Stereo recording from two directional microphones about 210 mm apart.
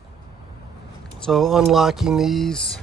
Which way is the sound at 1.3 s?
Centre (ahead or behind).